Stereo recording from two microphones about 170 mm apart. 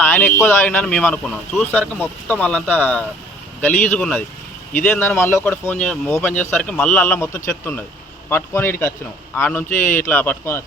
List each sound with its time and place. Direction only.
0.0 s speech: 10° left (ahead or behind)
9.6 s speech: 50° left (ahead or behind)
9.9 s speech: 10° left (ahead or behind)